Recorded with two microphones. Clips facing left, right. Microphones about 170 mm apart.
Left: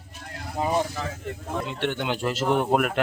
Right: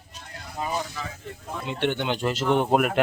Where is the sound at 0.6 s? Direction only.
25° left (ahead or behind).